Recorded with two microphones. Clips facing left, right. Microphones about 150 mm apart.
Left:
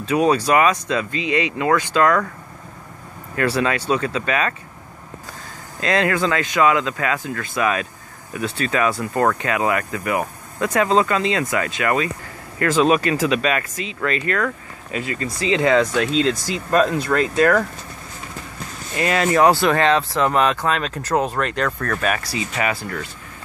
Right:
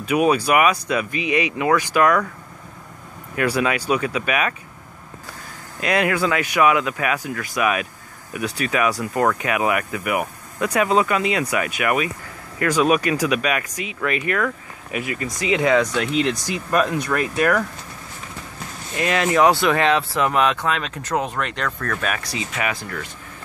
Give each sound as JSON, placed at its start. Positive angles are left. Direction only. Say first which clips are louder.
{"t": 0.1, "sound": "speech", "louder": "left 1 dB", "side_deg": -10}
{"t": 3.3, "sound": "speech", "louder": "left 1 dB", "side_deg": -10}
{"t": 5.8, "sound": "speech", "louder": "left 1 dB", "side_deg": -15}
{"t": 18.9, "sound": "speech", "louder": "left 1 dB", "side_deg": 0}